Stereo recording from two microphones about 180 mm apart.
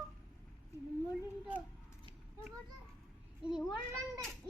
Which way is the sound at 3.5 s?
Centre (ahead or behind).